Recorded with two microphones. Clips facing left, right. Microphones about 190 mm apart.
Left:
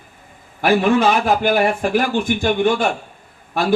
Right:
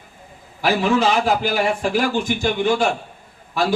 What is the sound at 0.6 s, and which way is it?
A man's voice, 55° left (ahead or behind).